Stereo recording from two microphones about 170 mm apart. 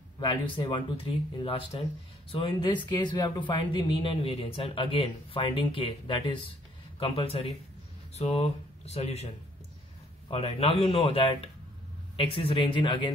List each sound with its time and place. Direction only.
0.2 s speech: 25° left (ahead or behind)